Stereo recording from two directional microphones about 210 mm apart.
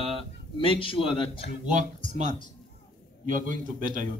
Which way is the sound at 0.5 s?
25° left (ahead or behind).